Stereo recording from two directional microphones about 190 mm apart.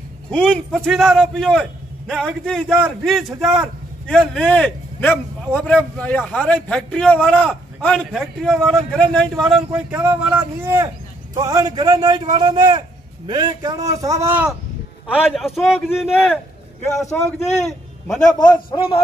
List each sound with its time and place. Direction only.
0.3 s a man's voice: 5° left (ahead or behind)
17.6 s a man's voice: 5° left (ahead or behind)
18.4 s a man's voice: 25° left (ahead or behind)